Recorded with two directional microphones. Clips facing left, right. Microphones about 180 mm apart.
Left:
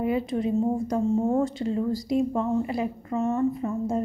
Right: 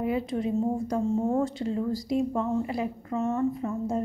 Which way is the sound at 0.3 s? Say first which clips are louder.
Left 2 dB; 25° left (ahead or behind).